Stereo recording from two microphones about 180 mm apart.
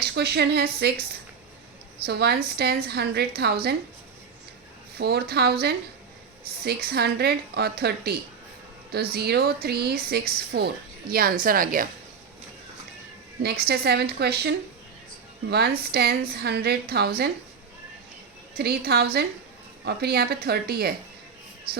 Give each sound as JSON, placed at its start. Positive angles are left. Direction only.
{"t": 0.0, "sound": "speech", "side_deg": -65}
{"t": 2.0, "sound": "speech", "side_deg": -65}
{"t": 4.9, "sound": "a woman's voice", "side_deg": -60}
{"t": 13.4, "sound": "speech", "side_deg": -65}
{"t": 18.5, "sound": "speech", "side_deg": -55}